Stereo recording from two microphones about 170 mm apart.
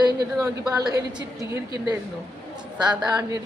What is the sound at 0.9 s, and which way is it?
Speech, 20° right (ahead or behind).